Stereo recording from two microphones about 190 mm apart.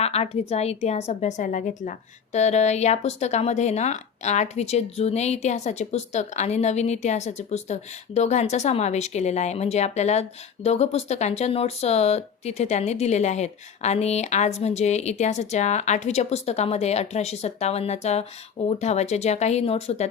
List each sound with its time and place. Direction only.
0.0 s a woman's voice: 35° left (ahead or behind)